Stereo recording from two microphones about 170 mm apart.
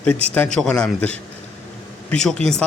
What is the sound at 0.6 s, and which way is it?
A man's voice, 5° left (ahead or behind).